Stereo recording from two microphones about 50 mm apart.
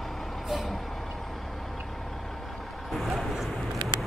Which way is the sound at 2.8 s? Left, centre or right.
Centre.